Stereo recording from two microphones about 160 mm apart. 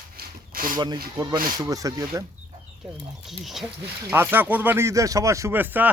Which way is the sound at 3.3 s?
Centre (ahead or behind).